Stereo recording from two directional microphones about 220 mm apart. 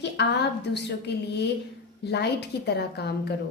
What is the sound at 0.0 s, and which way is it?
A woman's voice, 50° left (ahead or behind).